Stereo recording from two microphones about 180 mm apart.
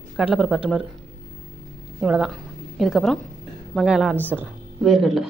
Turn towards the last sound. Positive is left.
turn(degrees=0)  # may be behind; listen again after turning